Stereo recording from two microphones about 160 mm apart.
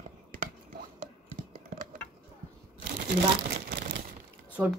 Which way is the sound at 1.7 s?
60° right (ahead or behind).